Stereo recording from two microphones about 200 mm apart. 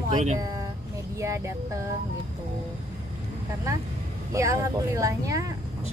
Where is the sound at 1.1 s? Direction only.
15° right (ahead or behind).